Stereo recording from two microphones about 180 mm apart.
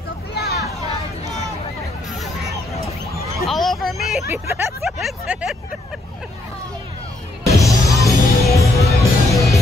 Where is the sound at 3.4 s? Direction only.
Centre (ahead or behind).